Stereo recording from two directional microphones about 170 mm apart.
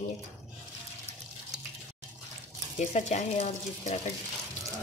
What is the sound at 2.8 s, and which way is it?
Speech, 45° left (ahead or behind).